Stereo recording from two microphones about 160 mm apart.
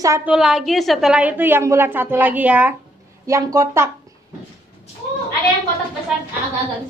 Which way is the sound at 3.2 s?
20° right (ahead or behind).